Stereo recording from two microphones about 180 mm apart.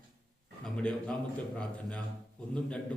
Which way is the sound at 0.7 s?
5° left (ahead or behind).